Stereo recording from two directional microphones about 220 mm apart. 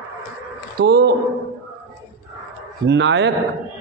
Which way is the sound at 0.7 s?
50° right (ahead or behind).